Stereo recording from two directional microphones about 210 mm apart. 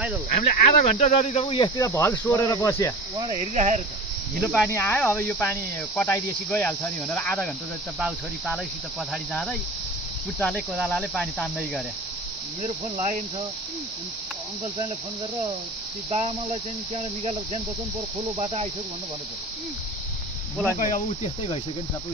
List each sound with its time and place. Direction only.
0.3 s speech: 35° left (ahead or behind); by 2.9 s 15° left (ahead or behind)
3.5 s speech: 35° right (ahead or behind)
4.6 s speech: 10° left (ahead or behind)
9.1 s speech: 5° left (ahead or behind)
12.6 s speech: 35° right (ahead or behind)
16.1 s speech: 30° right (ahead or behind)
20.8 s speech: 30° left (ahead or behind)